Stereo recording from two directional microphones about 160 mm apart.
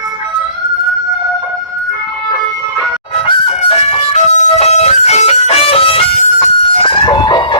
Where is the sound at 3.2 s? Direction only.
35° left (ahead or behind).